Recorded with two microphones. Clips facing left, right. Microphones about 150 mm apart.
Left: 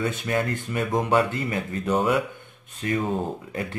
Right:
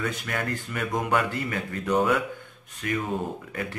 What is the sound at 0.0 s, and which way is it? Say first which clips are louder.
Speech: left 5 dB; 25° left (ahead or behind).